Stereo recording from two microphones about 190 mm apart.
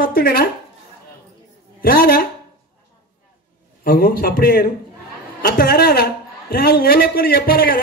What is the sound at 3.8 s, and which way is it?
Speech, 50° left (ahead or behind).